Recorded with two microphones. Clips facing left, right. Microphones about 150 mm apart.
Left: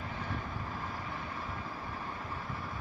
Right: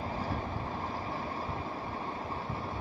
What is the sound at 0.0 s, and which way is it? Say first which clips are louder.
Vehicle: right 4 dB; 35° right (ahead or behind).